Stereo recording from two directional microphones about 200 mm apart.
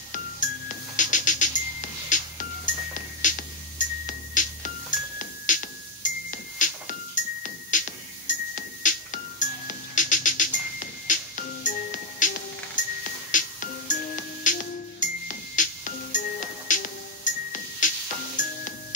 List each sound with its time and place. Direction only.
0.9 s music: 40° left (ahead or behind)
13.3 s music: 40° left (ahead or behind)